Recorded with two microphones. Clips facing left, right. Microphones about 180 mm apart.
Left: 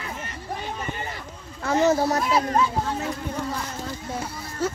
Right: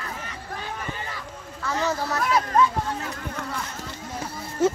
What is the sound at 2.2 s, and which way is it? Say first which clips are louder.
Speech: even; 30° left (ahead or behind).